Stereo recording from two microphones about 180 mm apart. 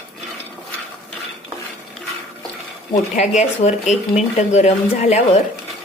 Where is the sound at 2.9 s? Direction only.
40° left (ahead or behind).